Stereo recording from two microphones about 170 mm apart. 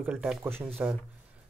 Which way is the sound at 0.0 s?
5° right (ahead or behind).